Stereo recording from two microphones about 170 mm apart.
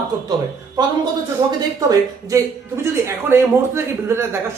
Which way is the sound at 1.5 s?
20° right (ahead or behind).